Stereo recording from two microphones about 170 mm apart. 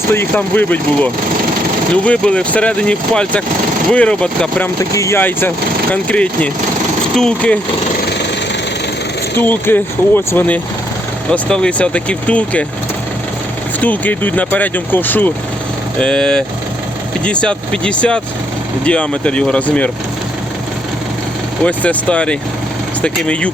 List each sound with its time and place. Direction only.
0.1 s speech: 10° left (ahead or behind)
4.8 s speech: 15° left (ahead or behind)
9.4 s speech: 10° left (ahead or behind)
13.8 s speech: 10° left (ahead or behind)
21.6 s speech: 5° left (ahead or behind)